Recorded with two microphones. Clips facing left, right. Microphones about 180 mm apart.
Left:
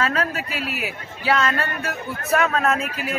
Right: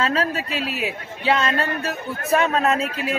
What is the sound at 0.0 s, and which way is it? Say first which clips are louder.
A man's voice: right 1 dB; 30° right (ahead or behind).